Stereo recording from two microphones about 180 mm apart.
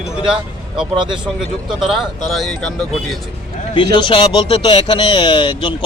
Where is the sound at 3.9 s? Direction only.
25° left (ahead or behind).